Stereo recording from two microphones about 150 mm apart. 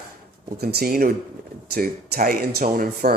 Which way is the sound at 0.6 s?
90° right.